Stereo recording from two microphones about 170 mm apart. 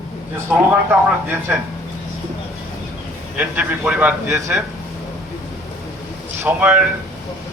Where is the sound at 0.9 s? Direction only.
10° right (ahead or behind).